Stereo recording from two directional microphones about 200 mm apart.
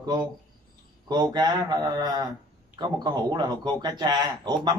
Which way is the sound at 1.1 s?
20° right (ahead or behind).